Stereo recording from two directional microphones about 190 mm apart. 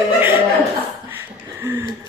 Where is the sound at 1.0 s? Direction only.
10° right (ahead or behind).